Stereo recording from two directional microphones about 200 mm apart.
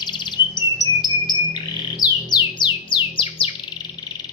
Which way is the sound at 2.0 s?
20° left (ahead or behind).